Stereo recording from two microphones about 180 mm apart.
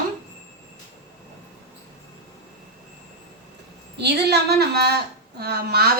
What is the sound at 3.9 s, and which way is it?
Speech, 65° right (ahead or behind).